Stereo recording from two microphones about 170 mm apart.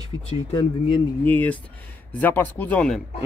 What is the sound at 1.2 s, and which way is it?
Speech, 10° left (ahead or behind).